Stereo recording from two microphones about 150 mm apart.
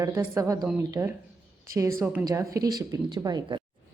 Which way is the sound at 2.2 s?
20° right (ahead or behind).